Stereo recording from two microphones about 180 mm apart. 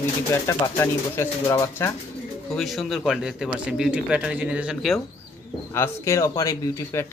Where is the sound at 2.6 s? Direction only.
Centre (ahead or behind).